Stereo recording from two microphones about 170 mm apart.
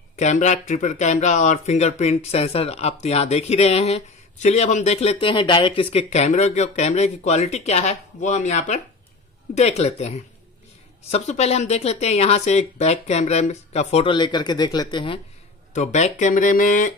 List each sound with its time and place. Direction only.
0.1 s speech: 45° left (ahead or behind); by 15.1 s 25° left (ahead or behind)
15.7 s speech: 45° left (ahead or behind)